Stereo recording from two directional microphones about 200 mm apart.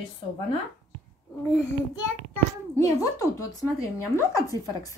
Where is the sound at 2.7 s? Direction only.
15° left (ahead or behind).